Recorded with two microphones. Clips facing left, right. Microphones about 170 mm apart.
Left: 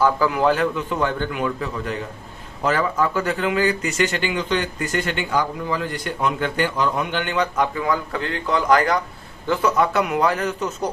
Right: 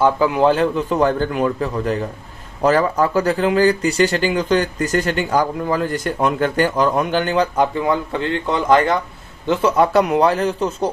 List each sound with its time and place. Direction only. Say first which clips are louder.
0.0 s a man's voice: right 3 dB; 25° right (ahead or behind)